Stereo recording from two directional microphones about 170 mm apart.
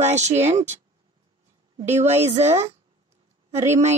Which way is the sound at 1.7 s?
40° right (ahead or behind).